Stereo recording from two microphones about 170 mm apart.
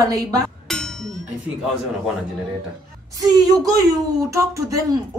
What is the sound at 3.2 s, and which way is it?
A woman's voice, 25° right (ahead or behind).